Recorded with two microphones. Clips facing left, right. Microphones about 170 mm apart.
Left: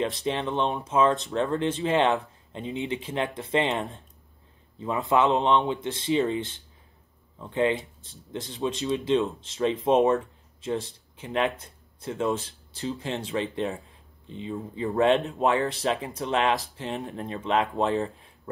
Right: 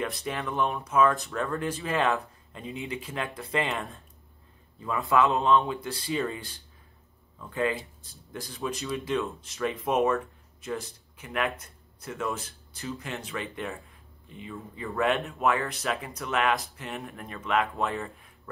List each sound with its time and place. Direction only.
0.2 s speech: 25° left (ahead or behind)